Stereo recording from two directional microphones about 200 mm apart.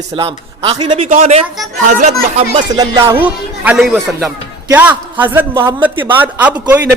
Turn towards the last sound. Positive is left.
turn(degrees=-5)  # may be behind; listen again after turning